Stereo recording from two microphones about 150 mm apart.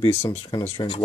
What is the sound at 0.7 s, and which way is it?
Speech, 30° left (ahead or behind).